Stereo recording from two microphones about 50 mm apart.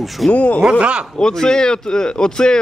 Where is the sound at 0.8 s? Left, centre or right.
Right.